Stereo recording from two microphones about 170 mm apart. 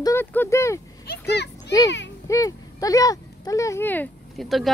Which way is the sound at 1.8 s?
90° left.